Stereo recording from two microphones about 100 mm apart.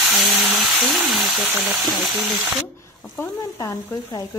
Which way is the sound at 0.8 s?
Centre (ahead or behind).